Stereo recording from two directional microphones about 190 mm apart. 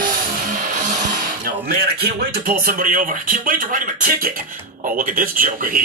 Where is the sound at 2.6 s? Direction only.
45° right (ahead or behind).